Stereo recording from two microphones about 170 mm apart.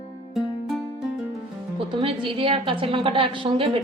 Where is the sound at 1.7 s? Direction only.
30° right (ahead or behind).